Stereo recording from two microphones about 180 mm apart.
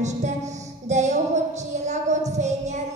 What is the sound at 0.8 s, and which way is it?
Music, 40° right (ahead or behind).